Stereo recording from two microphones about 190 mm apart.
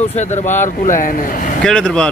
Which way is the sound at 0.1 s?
40° left (ahead or behind).